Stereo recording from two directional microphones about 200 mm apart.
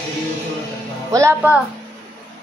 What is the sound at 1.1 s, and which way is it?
Speech, 10° right (ahead or behind).